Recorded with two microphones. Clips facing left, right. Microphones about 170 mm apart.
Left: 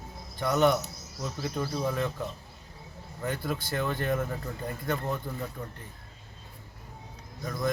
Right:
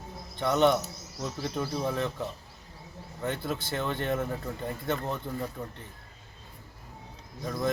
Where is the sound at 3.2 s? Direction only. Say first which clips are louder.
Even; centre (ahead or behind).